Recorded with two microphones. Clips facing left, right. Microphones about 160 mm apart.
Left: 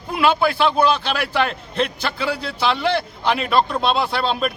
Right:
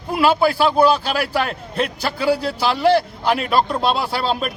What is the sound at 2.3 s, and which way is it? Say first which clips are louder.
Speech: right 6 dB; 40° right (ahead or behind).